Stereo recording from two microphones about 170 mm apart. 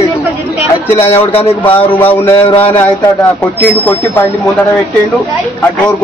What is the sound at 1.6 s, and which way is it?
Speech, 10° left (ahead or behind).